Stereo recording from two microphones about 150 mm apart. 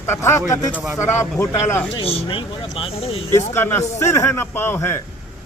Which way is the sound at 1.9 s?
40° left (ahead or behind).